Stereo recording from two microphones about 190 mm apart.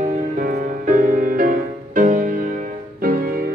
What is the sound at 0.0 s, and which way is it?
Music, 45° right (ahead or behind).